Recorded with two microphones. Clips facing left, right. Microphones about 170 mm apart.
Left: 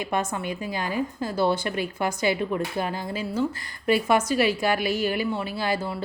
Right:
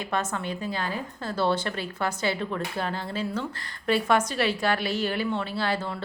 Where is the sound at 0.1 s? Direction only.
10° left (ahead or behind).